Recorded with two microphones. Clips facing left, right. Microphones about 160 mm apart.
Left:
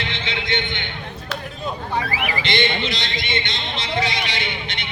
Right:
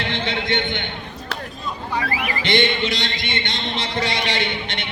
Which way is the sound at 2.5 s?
60° right (ahead or behind).